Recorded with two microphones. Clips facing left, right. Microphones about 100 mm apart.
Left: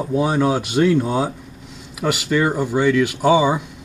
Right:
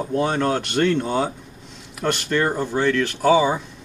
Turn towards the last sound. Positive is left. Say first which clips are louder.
# left 1 dB
turn(degrees=10)  # may be behind; listen again after turning